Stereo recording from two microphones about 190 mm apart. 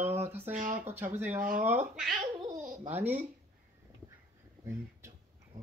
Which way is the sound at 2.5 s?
40° right (ahead or behind).